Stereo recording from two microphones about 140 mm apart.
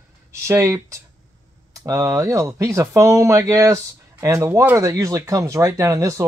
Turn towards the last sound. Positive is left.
turn(degrees=-20)  # may be behind; listen again after turning